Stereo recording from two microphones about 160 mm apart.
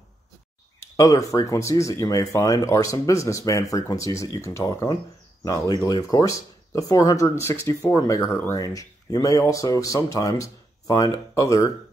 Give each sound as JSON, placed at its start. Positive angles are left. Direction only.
{"t": 0.7, "sound": "speech", "side_deg": 20}